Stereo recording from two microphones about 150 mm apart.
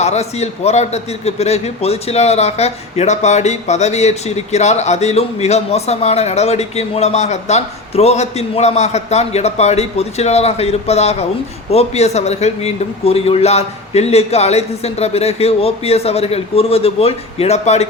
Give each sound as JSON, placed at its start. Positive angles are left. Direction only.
{"t": 0.0, "sound": "a man's voice", "side_deg": 45}